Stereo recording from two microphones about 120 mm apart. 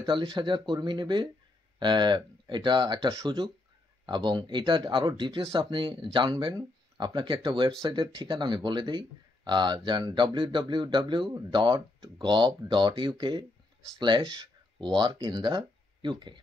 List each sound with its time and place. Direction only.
0.2 s speech: 40° right (ahead or behind)